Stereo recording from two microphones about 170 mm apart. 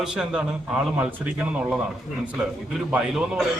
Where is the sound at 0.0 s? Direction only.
5° right (ahead or behind).